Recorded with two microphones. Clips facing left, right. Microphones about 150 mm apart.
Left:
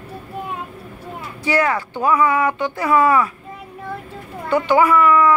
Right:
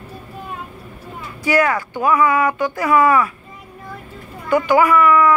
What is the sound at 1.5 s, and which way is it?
Speech, 25° left (ahead or behind).